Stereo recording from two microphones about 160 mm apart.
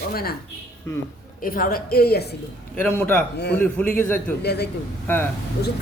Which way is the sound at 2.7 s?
10° left (ahead or behind).